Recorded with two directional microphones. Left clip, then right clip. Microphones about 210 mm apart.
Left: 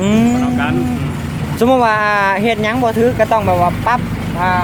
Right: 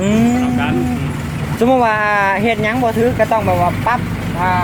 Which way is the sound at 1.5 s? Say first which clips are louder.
Left 1 dB; 5° left (ahead or behind).